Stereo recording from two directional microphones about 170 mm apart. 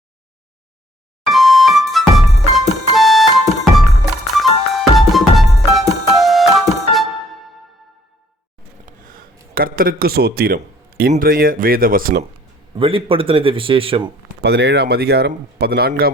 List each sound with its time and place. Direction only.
1.3 s music: centre (ahead or behind)
8.9 s a sound: 55° right (ahead or behind)
11.1 s speech: 55° right (ahead or behind)
12.7 s a man's voice: 30° right (ahead or behind)
14.4 s speech: 80° right